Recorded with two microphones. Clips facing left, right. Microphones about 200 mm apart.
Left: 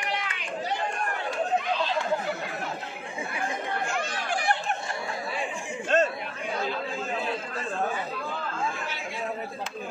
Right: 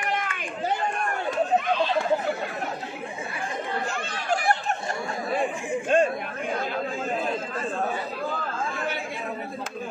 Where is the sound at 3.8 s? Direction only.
40° right (ahead or behind).